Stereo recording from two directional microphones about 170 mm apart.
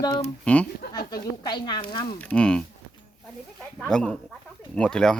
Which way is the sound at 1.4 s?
25° left (ahead or behind).